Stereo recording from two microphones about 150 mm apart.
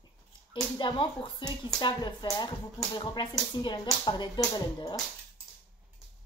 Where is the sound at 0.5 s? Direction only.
35° left (ahead or behind).